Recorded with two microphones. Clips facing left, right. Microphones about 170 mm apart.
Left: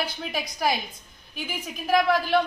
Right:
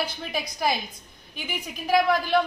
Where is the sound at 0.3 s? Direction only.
Centre (ahead or behind).